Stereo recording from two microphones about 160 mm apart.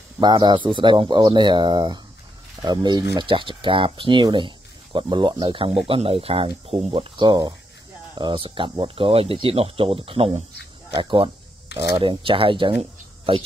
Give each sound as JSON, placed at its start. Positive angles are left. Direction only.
{"t": 0.2, "sound": "speech", "side_deg": -30}